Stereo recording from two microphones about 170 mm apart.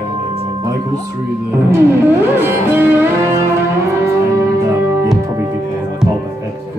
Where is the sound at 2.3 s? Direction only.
10° right (ahead or behind).